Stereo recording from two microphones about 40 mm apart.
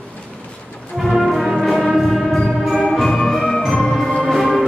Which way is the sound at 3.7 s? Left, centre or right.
Centre.